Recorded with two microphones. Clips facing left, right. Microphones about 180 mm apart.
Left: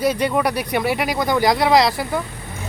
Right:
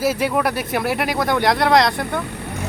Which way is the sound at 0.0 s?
5° right (ahead or behind).